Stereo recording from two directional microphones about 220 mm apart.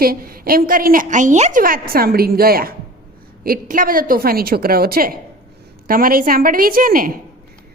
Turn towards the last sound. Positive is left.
turn(degrees=-40)  # may be behind; listen again after turning